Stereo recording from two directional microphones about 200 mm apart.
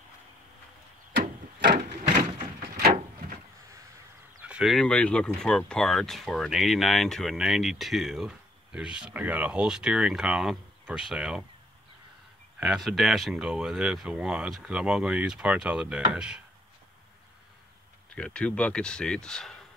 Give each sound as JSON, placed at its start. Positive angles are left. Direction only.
{"t": 1.1, "sound": "wood", "side_deg": -50}
{"t": 4.5, "sound": "speech", "side_deg": 0}
{"t": 12.5, "sound": "speech", "side_deg": -5}
{"t": 18.1, "sound": "speech", "side_deg": 5}